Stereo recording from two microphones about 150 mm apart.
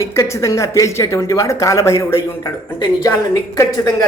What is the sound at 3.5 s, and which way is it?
Speech, 25° left (ahead or behind).